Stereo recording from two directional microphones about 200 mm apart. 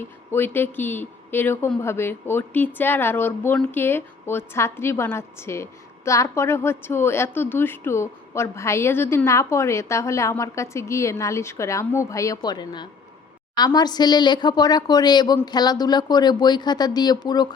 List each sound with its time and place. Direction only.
0.0 s a woman's voice: 10° left (ahead or behind)